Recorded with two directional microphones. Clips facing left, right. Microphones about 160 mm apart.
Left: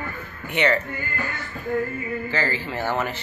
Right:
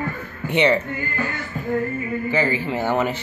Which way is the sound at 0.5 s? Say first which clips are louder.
Right 4 dB; 20° right (ahead or behind).